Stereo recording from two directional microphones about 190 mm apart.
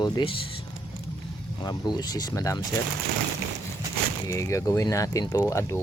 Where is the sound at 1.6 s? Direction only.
20° left (ahead or behind).